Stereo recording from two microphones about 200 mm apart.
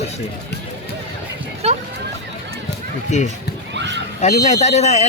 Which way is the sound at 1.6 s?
30° right (ahead or behind).